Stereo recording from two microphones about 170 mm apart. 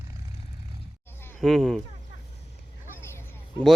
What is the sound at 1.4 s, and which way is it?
Speech, centre (ahead or behind).